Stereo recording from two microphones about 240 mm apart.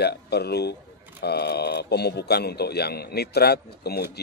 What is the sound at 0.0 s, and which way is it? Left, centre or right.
Speech, left.